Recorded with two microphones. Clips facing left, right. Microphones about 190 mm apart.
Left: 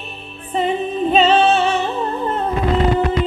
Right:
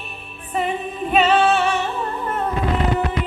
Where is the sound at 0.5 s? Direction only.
25° left (ahead or behind).